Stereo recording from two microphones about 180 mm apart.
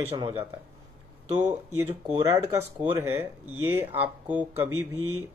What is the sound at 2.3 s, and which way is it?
Speech, 15° right (ahead or behind).